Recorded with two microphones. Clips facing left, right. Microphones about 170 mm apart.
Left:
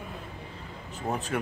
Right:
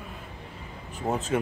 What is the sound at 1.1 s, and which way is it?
Speech, 20° right (ahead or behind).